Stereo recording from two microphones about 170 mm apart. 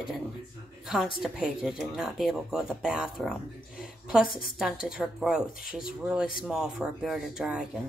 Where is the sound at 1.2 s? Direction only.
5° right (ahead or behind).